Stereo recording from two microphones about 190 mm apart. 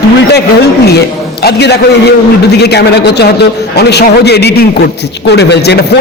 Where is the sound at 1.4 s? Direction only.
60° left (ahead or behind).